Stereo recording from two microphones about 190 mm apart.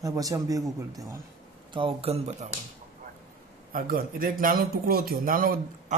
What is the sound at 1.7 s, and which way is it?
Speech, 30° right (ahead or behind).